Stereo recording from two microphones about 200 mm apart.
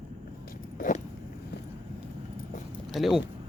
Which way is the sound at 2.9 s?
Centre (ahead or behind).